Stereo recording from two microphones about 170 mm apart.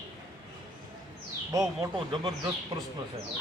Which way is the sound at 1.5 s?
20° right (ahead or behind).